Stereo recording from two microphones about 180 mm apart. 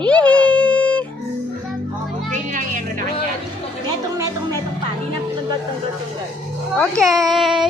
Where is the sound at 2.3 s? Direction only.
45° right (ahead or behind).